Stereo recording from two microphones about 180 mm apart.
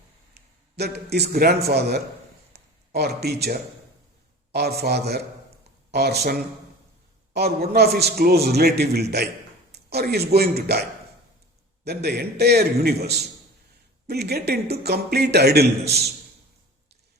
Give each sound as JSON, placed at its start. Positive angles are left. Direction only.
{"t": 0.8, "sound": "a man's voice", "side_deg": -65}
{"t": 2.5, "sound": "a sound", "side_deg": -65}
{"t": 4.5, "sound": "a man's voice", "side_deg": -65}
{"t": 11.9, "sound": "a man's voice", "side_deg": -65}